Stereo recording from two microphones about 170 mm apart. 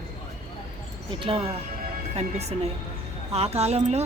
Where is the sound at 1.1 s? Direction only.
30° right (ahead or behind).